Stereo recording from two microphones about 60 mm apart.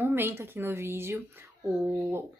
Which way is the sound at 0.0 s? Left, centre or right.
Right.